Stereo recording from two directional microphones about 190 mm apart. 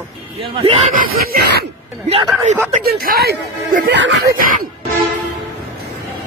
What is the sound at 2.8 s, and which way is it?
Speech, 50° right (ahead or behind).